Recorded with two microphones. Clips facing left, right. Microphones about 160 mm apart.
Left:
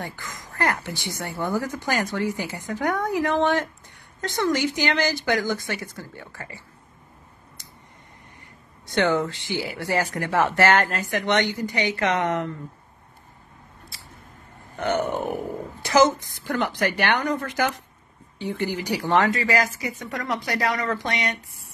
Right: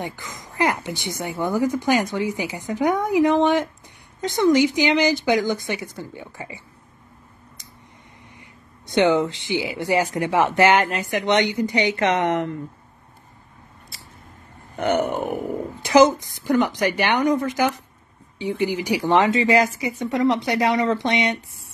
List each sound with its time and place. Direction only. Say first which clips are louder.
0.0 s speech: right 3 dB; 15° right (ahead or behind)
8.8 s speech: right 4 dB; 15° right (ahead or behind)
14.8 s speech: right 3 dB; 15° right (ahead or behind)